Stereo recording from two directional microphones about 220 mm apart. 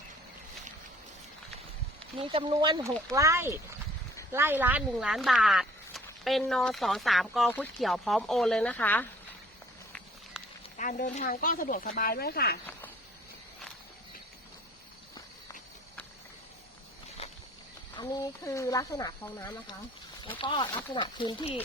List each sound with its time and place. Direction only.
2.1 s speech: 25° right (ahead or behind); by 9.0 s 5° left (ahead or behind)
10.8 s speech: 35° left (ahead or behind)
17.2 s a sound: 30° left (ahead or behind)
17.9 s speech: 15° left (ahead or behind)